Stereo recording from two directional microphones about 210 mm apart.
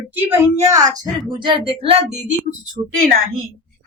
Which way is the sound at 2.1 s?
55° right (ahead or behind).